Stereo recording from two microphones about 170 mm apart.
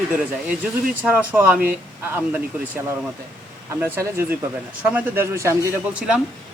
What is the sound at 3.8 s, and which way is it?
Speech, 15° right (ahead or behind).